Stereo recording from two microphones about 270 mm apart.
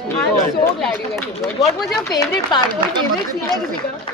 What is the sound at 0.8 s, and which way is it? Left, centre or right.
Speech, centre.